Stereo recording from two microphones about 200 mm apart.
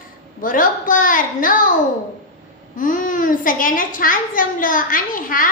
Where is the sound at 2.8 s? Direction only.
40° left (ahead or behind).